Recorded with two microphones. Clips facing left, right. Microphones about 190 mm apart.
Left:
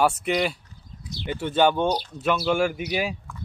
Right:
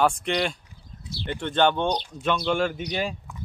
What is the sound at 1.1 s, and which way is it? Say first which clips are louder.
Speech: left 1 dB; 20° left (ahead or behind).